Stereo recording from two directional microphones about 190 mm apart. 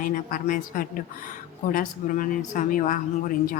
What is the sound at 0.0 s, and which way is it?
A woman's voice, 45° left (ahead or behind).